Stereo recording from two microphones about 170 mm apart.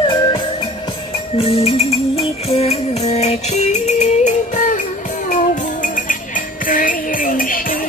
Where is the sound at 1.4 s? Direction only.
35° left (ahead or behind).